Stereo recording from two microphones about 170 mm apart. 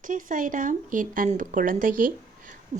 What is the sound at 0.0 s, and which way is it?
Speech, 50° right (ahead or behind).